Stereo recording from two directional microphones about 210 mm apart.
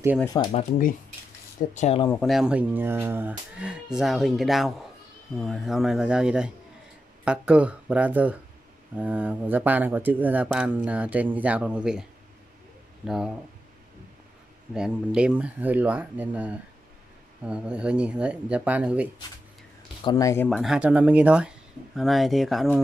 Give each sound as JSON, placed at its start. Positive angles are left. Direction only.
{"t": 0.2, "sound": "speech", "side_deg": 15}
{"t": 0.5, "sound": "speech", "side_deg": 35}
{"t": 2.0, "sound": "speech", "side_deg": 5}
{"t": 14.7, "sound": "speech", "side_deg": -5}
{"t": 20.0, "sound": "speech", "side_deg": 20}
{"t": 20.4, "sound": "speech", "side_deg": 0}